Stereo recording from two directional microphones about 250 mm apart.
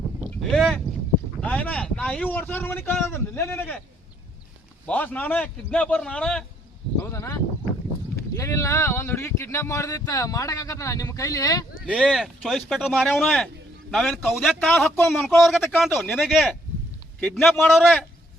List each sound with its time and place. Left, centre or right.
0.2 s boat: centre
1.4 s speech: centre
4.9 s a man's voice: centre
11.9 s a man's voice: centre